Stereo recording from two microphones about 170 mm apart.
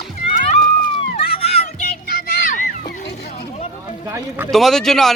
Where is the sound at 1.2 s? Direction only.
35° left (ahead or behind).